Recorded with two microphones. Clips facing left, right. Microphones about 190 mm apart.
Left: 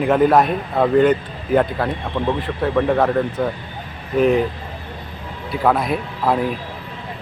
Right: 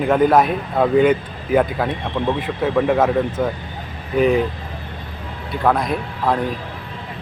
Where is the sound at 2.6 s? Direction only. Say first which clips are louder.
Even; 5° right (ahead or behind).